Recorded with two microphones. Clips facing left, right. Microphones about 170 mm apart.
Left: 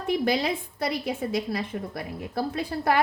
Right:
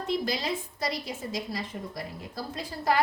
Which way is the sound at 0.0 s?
60° left (ahead or behind).